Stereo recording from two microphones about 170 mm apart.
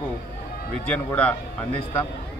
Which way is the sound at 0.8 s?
5° left (ahead or behind).